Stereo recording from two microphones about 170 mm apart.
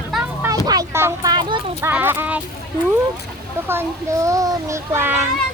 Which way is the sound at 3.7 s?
15° right (ahead or behind).